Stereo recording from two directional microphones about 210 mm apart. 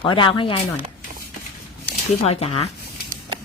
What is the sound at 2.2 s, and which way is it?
Speech, 30° left (ahead or behind).